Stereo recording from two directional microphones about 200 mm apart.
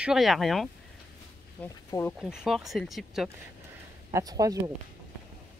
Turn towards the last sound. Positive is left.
turn(degrees=-20)  # may be behind; listen again after turning